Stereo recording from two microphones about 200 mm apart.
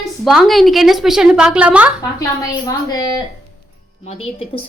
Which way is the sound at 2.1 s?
15° left (ahead or behind).